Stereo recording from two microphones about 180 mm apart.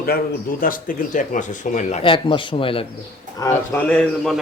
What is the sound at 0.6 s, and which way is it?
Speech, 50° left (ahead or behind).